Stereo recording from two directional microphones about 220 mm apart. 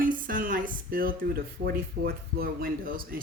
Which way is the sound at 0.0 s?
40° right (ahead or behind).